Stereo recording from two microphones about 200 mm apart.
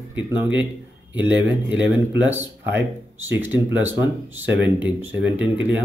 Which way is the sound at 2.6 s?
60° right (ahead or behind).